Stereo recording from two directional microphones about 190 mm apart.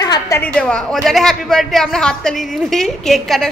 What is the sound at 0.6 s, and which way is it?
A woman's voice, 5° left (ahead or behind).